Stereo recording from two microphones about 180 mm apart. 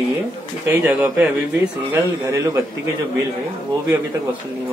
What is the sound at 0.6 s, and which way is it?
Speech, 10° right (ahead or behind).